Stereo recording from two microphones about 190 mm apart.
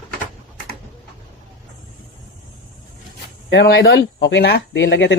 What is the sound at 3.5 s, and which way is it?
Speech, 65° left (ahead or behind).